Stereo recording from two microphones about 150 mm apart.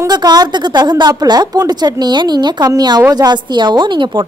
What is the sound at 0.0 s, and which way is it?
A woman's voice, 25° right (ahead or behind).